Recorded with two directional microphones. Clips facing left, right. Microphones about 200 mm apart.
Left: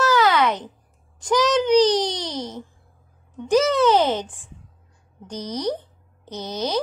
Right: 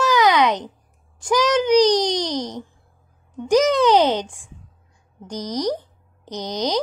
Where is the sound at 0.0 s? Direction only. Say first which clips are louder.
Right 2 dB; 15° right (ahead or behind).